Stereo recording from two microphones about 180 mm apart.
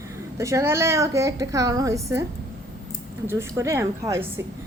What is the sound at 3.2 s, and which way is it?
Speech, 15° right (ahead or behind).